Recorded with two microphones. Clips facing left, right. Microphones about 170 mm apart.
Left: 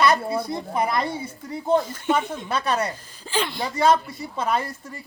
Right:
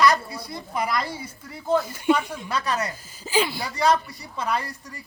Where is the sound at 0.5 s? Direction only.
25° left (ahead or behind).